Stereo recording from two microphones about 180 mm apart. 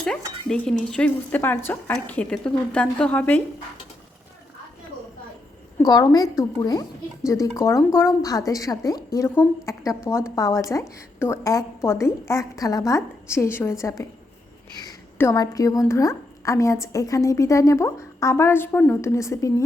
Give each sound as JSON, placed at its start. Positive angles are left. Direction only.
{"t": 0.0, "sound": "speech", "side_deg": 5}
{"t": 5.8, "sound": "a woman's voice", "side_deg": 20}